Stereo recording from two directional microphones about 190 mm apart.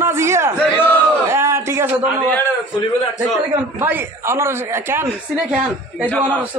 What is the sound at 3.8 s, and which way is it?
A man's voice, 15° right (ahead or behind).